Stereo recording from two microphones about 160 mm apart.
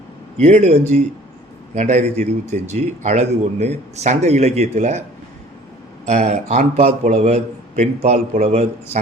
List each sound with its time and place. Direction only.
0.3 s a man's voice: 45° right (ahead or behind)
6.1 s a man's voice: 45° right (ahead or behind)